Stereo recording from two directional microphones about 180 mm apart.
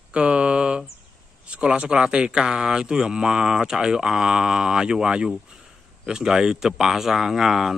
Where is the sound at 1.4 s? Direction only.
5° right (ahead or behind).